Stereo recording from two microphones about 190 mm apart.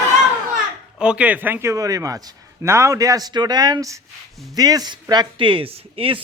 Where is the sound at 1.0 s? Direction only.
5° right (ahead or behind).